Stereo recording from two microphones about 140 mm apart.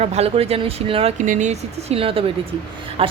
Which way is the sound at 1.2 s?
60° right (ahead or behind).